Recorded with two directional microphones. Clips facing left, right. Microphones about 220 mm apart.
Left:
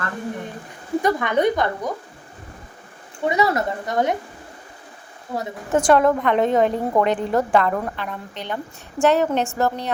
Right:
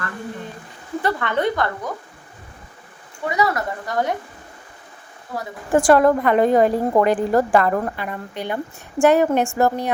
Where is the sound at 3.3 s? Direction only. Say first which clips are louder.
Left 2 dB; 25° left (ahead or behind).